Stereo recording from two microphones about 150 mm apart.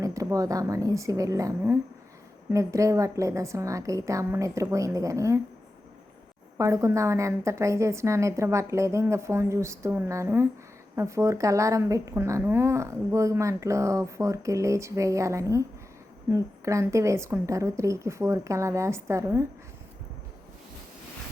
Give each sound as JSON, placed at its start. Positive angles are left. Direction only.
{"t": 0.0, "sound": "a woman's voice", "side_deg": -20}
{"t": 6.6, "sound": "a woman's voice", "side_deg": -20}